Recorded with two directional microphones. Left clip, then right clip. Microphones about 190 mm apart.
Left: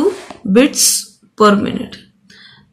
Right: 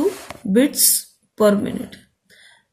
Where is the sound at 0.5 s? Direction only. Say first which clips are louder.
Left 6 dB; 15° right (ahead or behind).